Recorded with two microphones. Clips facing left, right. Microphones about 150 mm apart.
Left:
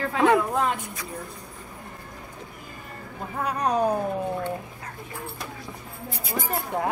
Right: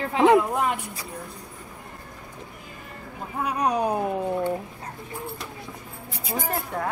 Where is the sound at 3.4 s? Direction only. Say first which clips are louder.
Even; 10° right (ahead or behind).